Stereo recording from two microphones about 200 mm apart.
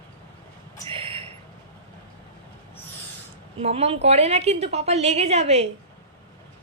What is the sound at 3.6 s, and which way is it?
A woman's voice, 30° right (ahead or behind).